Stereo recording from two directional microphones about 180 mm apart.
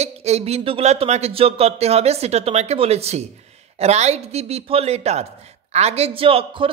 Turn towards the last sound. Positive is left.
turn(degrees=-30)  # may be behind; listen again after turning